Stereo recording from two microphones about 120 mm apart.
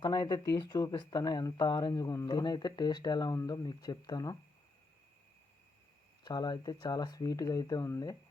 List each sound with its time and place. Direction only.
0.0 s speech: 35° left (ahead or behind)
6.2 s speech: 35° left (ahead or behind)